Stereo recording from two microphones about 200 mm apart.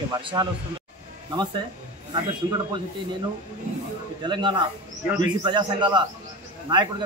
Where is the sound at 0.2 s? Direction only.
25° right (ahead or behind).